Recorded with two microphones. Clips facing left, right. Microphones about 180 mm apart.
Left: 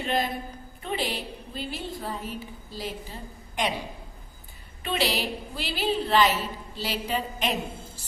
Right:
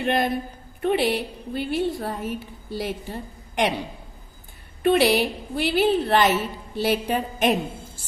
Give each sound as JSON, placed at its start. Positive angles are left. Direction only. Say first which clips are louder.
{"t": 0.0, "sound": "a man's voice", "louder": "right 5 dB", "side_deg": -60}
{"t": 4.8, "sound": "a woman's voice", "louder": "right 9 dB", "side_deg": -55}